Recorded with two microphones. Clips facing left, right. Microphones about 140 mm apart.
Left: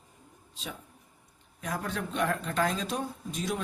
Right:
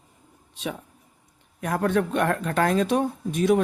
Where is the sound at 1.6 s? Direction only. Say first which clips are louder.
Right 11 dB; 60° right (ahead or behind).